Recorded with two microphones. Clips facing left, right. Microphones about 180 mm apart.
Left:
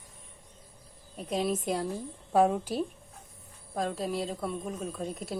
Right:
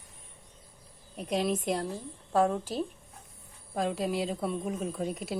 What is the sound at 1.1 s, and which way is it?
A woman's voice, centre (ahead or behind).